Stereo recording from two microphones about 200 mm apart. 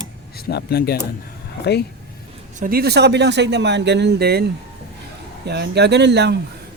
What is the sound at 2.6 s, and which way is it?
Speech, 50° right (ahead or behind).